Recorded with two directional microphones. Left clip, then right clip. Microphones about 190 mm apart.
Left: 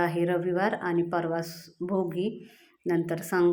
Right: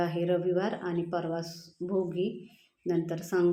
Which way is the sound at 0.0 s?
30° left (ahead or behind).